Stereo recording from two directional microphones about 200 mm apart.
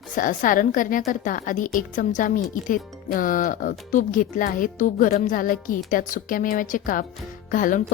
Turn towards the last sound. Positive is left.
turn(degrees=40)  # may be behind; listen again after turning